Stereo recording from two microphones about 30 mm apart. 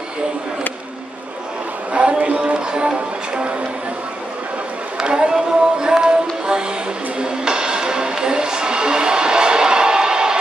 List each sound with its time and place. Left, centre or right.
1.9 s a sound: right
2.3 s music: right
5.0 s music: right